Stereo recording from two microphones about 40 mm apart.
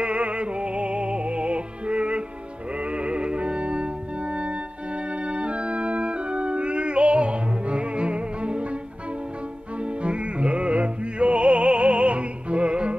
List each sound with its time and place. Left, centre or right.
0.0 s music: right
5.2 s organ: right
10.0 s music: right